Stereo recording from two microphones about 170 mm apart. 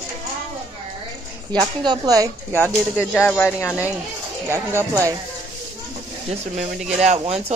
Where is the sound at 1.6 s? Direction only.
25° right (ahead or behind).